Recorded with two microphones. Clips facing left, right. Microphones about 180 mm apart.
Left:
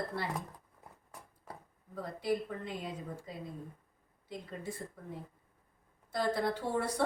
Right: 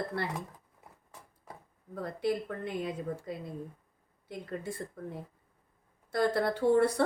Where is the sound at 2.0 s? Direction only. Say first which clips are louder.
Right 2 dB; 65° right (ahead or behind).